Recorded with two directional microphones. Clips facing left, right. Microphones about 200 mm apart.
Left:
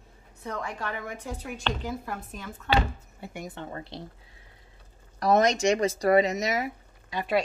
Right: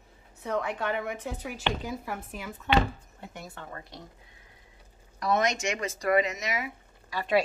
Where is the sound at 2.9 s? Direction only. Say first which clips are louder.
Left 4 dB; 10° left (ahead or behind); by 4.0 s 25° left (ahead or behind).